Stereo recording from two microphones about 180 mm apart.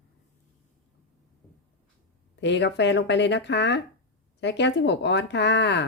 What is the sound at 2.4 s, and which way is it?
Speech, 80° left.